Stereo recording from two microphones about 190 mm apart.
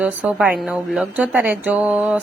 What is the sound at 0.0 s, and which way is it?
A woman's voice, 5° right (ahead or behind).